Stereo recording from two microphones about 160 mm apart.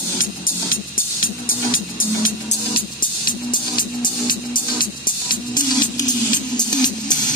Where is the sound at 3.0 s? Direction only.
30° left (ahead or behind).